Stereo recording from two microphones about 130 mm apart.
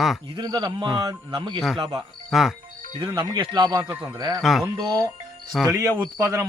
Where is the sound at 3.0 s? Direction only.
40° right (ahead or behind).